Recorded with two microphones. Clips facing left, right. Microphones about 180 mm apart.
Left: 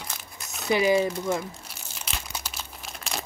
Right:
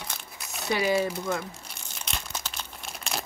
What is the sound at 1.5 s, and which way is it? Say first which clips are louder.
Crumpling: left 1 dB; 5° left (ahead or behind).